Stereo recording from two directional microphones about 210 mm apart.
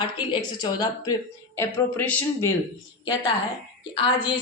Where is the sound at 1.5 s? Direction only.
10° left (ahead or behind).